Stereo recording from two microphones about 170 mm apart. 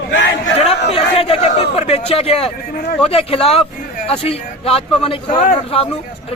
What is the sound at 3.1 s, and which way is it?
A man's voice, 35° left (ahead or behind).